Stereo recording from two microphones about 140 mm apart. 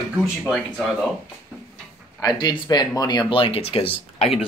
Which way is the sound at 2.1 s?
30° left (ahead or behind).